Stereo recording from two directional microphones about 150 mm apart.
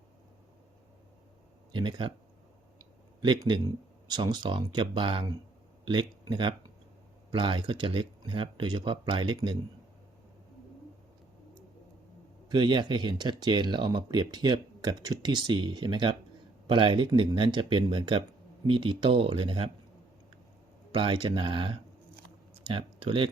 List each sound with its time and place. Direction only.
1.7 s speech: 30° right (ahead or behind)
3.2 s speech: 30° right (ahead or behind)
12.5 s speech: 30° right (ahead or behind)
20.9 s speech: 35° right (ahead or behind)